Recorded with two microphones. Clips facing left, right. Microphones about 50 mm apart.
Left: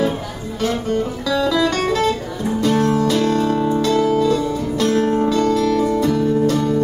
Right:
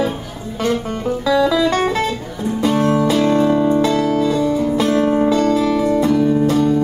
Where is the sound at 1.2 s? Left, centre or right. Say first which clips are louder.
Right 5 dB; centre.